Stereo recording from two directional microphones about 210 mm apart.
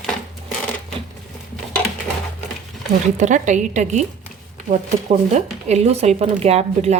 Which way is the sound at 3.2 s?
35° right (ahead or behind).